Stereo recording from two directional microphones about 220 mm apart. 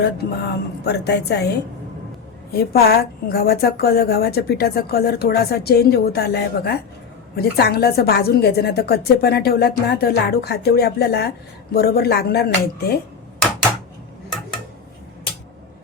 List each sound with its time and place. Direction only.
0.0 s a woman's voice: 50° left (ahead or behind)